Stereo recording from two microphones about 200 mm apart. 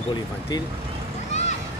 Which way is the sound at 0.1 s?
20° left (ahead or behind).